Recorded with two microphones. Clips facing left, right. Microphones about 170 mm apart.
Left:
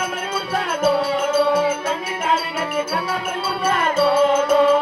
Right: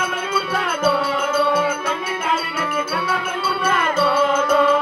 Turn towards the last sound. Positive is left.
turn(degrees=30)  # may be behind; listen again after turning